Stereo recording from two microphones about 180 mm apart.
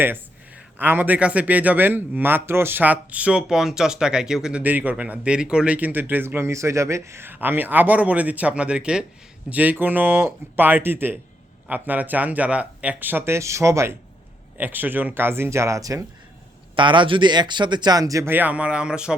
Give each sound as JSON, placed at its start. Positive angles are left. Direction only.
{"t": 0.8, "sound": "a man's voice", "side_deg": -10}